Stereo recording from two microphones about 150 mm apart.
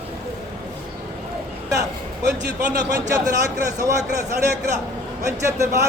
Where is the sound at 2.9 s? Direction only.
20° right (ahead or behind).